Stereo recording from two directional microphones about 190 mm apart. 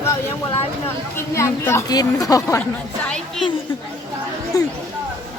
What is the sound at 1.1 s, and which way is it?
Speech, 15° left (ahead or behind).